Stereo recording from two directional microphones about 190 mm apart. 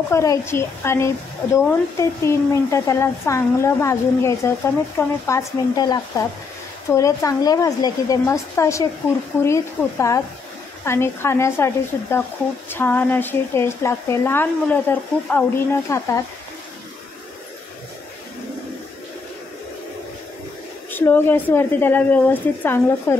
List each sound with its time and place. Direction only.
0.1 s speech: 15° left (ahead or behind)
20.9 s speech: 10° left (ahead or behind)